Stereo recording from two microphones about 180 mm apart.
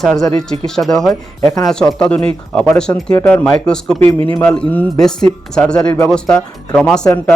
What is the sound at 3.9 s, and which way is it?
Speech, 30° right (ahead or behind).